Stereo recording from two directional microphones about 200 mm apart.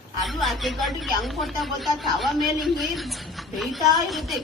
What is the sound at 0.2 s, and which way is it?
Speech, centre (ahead or behind).